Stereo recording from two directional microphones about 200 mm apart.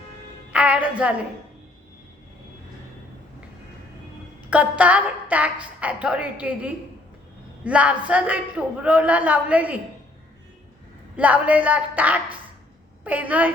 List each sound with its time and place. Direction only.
0.5 s a woman's voice: 5° right (ahead or behind)
4.4 s a woman's voice: 5° right (ahead or behind)
11.2 s a woman's voice: 5° right (ahead or behind)